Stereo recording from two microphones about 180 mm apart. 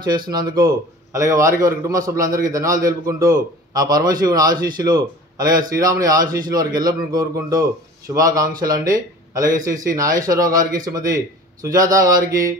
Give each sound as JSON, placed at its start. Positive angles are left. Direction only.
{"t": 0.3, "sound": "a man's voice", "side_deg": -20}